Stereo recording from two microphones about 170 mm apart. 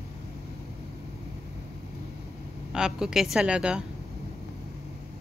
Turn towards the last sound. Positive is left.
turn(degrees=-5)  # may be behind; listen again after turning